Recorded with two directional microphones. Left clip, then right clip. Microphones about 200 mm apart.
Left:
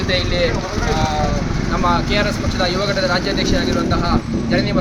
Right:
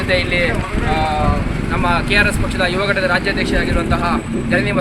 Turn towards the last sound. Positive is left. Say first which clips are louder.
# right 2 dB
turn(degrees=20)  # may be behind; listen again after turning